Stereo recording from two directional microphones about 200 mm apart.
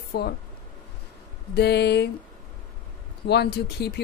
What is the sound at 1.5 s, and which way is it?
Speech, 55° left (ahead or behind).